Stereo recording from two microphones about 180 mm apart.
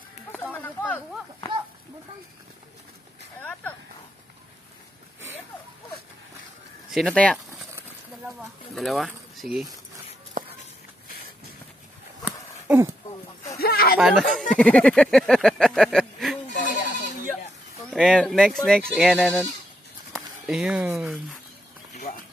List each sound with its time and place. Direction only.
0.3 s a sound: 10° left (ahead or behind)
6.9 s speech: centre (ahead or behind)
12.3 s horse: 10° right (ahead or behind)
13.6 s speech: 60° left (ahead or behind)
13.9 s speech: centre (ahead or behind)
16.5 s goat: 45° left (ahead or behind)
17.8 s speech: 5° left (ahead or behind)